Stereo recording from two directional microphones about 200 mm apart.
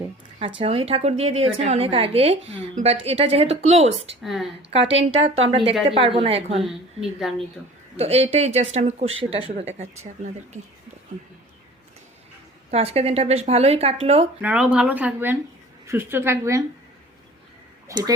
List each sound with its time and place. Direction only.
0.6 s a woman's voice: 30° right (ahead or behind)
4.2 s a woman's voice: centre (ahead or behind)
5.1 s a woman's voice: 30° right (ahead or behind)
6.6 s a woman's voice: centre (ahead or behind)
7.9 s speech: 30° right (ahead or behind)
12.7 s speech: 30° right (ahead or behind)
14.4 s speech: 5° right (ahead or behind)
17.9 s speech: 15° right (ahead or behind)